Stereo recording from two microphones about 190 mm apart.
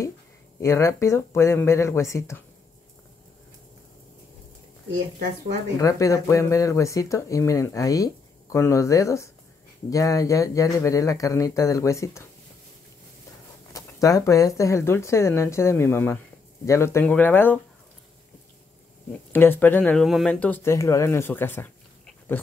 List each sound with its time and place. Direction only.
0.6 s speech: 15° left (ahead or behind)
5.8 s speech: 15° left (ahead or behind)
13.7 s speech: 15° left (ahead or behind)
19.3 s speech: 10° left (ahead or behind)